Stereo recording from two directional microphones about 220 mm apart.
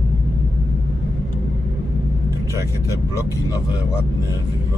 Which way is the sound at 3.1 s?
15° left (ahead or behind).